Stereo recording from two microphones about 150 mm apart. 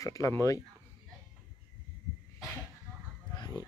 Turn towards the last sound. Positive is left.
turn(degrees=25)  # may be behind; listen again after turning